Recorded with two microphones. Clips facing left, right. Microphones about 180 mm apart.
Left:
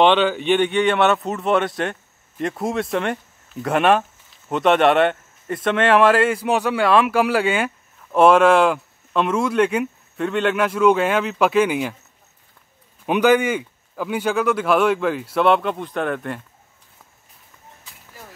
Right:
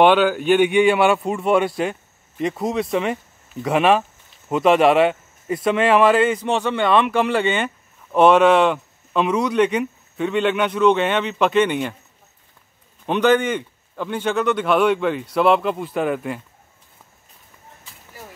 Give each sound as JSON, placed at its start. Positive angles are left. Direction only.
{"t": 0.0, "sound": "speech", "side_deg": -5}
{"t": 13.0, "sound": "speech", "side_deg": 10}